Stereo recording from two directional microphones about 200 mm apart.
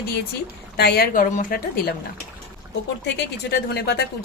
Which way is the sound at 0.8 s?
50° left (ahead or behind).